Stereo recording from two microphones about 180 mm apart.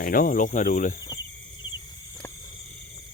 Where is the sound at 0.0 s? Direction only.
50° left (ahead or behind).